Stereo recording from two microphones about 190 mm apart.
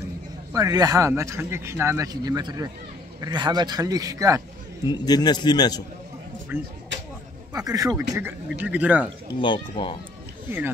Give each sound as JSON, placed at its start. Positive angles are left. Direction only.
{"t": 0.5, "sound": "a man's voice", "side_deg": -20}
{"t": 4.8, "sound": "a man's voice", "side_deg": 20}
{"t": 6.5, "sound": "a man's voice", "side_deg": -10}
{"t": 6.9, "sound": "a sound", "side_deg": -75}
{"t": 7.5, "sound": "a man's voice", "side_deg": -20}
{"t": 8.5, "sound": "a man's voice", "side_deg": -10}
{"t": 9.4, "sound": "a man's voice", "side_deg": 25}